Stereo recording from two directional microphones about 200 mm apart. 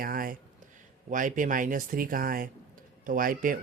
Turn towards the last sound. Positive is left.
turn(degrees=-45)  # may be behind; listen again after turning